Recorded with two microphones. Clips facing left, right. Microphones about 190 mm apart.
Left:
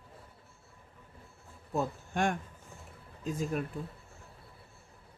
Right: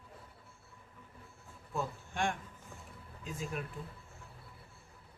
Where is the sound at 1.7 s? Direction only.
40° left (ahead or behind).